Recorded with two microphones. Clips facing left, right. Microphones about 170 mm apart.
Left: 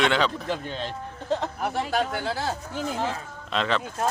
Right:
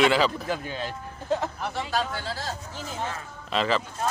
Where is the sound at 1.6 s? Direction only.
50° left (ahead or behind).